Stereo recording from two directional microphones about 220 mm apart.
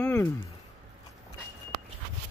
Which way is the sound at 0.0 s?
10° left (ahead or behind).